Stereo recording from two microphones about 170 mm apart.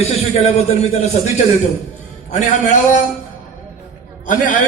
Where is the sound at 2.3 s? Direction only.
45° left (ahead or behind).